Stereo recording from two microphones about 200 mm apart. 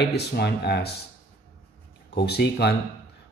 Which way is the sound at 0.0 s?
55° left (ahead or behind).